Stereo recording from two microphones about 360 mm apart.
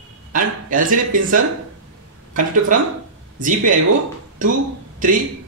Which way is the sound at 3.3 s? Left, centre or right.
Right.